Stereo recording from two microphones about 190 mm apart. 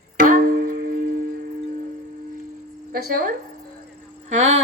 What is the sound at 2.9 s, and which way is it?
Speech, 50° right (ahead or behind).